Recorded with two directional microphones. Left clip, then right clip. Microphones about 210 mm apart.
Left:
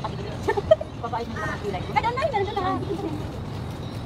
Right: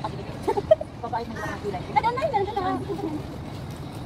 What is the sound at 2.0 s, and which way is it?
Speech, 20° right (ahead or behind).